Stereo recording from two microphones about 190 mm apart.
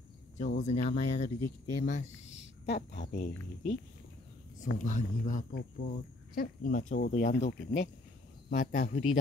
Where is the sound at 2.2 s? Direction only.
80° left.